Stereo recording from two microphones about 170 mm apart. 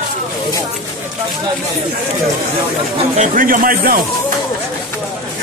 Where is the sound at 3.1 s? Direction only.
50° right (ahead or behind).